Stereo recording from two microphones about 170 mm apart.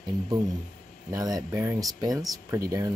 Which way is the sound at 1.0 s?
20° right (ahead or behind).